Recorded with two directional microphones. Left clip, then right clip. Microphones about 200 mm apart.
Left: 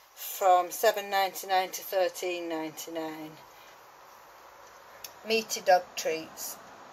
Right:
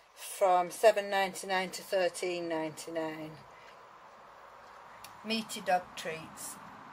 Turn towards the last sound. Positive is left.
turn(degrees=5)  # may be behind; listen again after turning